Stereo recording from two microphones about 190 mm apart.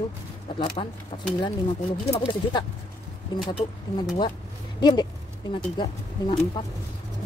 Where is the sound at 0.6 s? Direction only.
35° left (ahead or behind).